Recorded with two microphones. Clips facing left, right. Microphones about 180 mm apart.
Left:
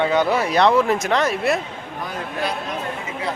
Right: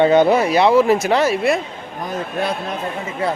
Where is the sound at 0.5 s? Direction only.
5° right (ahead or behind).